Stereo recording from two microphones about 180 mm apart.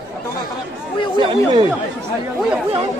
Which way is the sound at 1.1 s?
25° right (ahead or behind).